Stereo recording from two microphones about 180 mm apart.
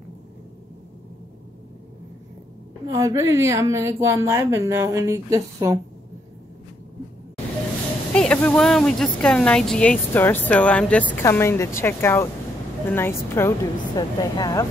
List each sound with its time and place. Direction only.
2.9 s a woman's voice: 20° right (ahead or behind)
8.1 s speech: 5° left (ahead or behind)